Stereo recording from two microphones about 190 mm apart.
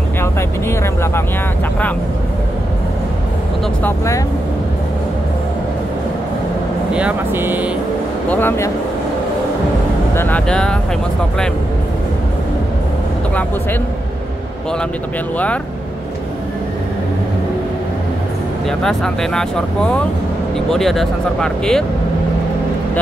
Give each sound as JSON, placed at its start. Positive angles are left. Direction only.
{"t": 0.2, "sound": "speech", "side_deg": 15}
{"t": 3.8, "sound": "speech", "side_deg": 15}
{"t": 6.9, "sound": "speech", "side_deg": -5}
{"t": 8.3, "sound": "speech", "side_deg": 10}
{"t": 10.1, "sound": "speech", "side_deg": 10}
{"t": 15.3, "sound": "speech", "side_deg": 5}
{"t": 18.7, "sound": "speech", "side_deg": 5}